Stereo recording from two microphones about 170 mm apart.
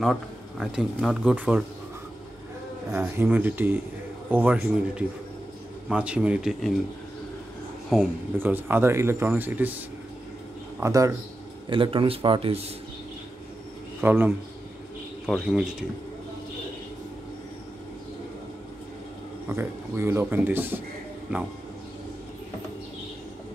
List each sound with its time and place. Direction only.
0.0 s speech: centre (ahead or behind)
2.9 s speech: 15° right (ahead or behind)
8.4 s speech: 10° right (ahead or behind)
10.8 s speech: 20° right (ahead or behind)
11.7 s speech: 30° right (ahead or behind)
14.0 s speech: 10° right (ahead or behind)
19.5 s speech: 15° right (ahead or behind)